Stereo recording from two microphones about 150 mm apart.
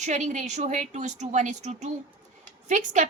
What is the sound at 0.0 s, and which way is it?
A woman's voice, 50° right (ahead or behind).